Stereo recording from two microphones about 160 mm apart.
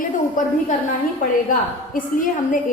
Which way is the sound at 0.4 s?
55° left (ahead or behind).